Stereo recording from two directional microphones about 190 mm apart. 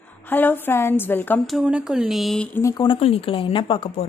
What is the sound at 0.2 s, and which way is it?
A woman's voice, 10° left (ahead or behind).